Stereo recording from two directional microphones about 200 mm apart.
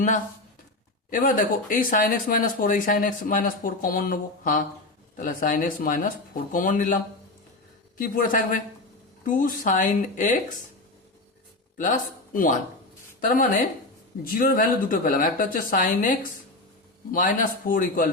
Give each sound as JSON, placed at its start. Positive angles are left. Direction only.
{"t": 1.1, "sound": "speech", "side_deg": 40}
{"t": 11.8, "sound": "speech", "side_deg": 40}